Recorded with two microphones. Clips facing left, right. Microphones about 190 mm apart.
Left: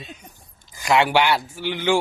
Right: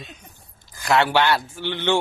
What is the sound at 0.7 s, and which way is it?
Speech, 15° left (ahead or behind).